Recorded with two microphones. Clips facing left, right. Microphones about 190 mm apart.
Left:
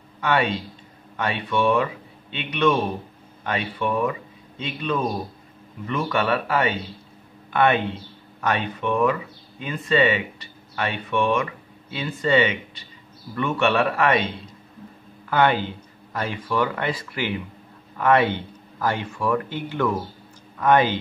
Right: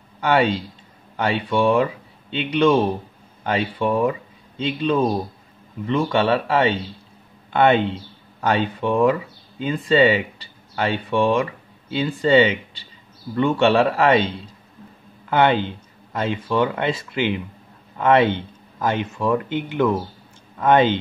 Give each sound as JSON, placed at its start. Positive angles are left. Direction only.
{"t": 0.2, "sound": "speech", "side_deg": -30}